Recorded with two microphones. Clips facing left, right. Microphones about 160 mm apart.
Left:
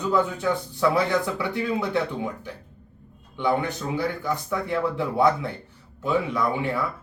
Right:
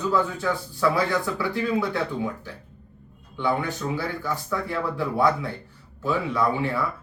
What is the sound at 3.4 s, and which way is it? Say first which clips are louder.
Speech: left 1 dB; 20° left (ahead or behind).